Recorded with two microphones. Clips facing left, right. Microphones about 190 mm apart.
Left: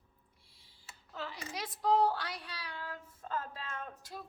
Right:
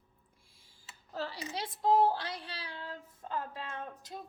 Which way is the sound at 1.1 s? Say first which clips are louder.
Right 4 dB; 35° right (ahead or behind).